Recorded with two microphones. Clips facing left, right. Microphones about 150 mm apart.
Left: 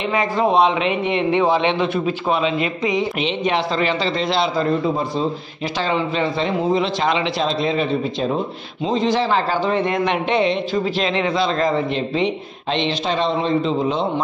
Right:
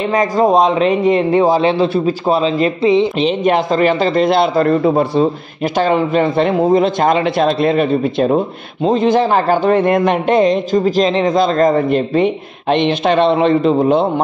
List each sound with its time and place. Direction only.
0.1 s a man's voice: 40° right (ahead or behind)
3.4 s a man's voice: 50° right (ahead or behind); by 5.2 s 65° right (ahead or behind)
5.8 s a man's voice: 50° right (ahead or behind)